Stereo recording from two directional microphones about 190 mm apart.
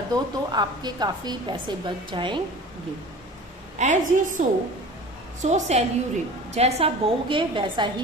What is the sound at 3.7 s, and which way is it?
A woman's voice, 40° right (ahead or behind).